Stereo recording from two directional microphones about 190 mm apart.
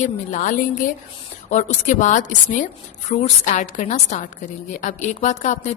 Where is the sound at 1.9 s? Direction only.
40° left (ahead or behind).